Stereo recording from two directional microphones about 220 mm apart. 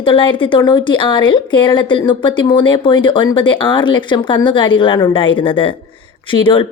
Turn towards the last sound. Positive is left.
turn(degrees=25)  # may be behind; listen again after turning